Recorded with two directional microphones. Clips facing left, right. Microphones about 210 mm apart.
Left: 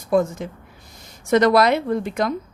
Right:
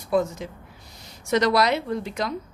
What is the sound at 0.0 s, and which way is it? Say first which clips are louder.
Speech: left 4 dB; 50° left (ahead or behind).